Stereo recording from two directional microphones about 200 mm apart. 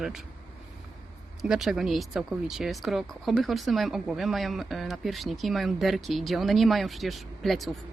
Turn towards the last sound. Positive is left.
turn(degrees=0)  # may be behind; listen again after turning